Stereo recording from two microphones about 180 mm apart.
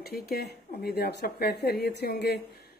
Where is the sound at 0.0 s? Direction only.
60° left (ahead or behind).